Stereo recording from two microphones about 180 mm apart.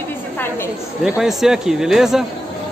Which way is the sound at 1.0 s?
Centre (ahead or behind).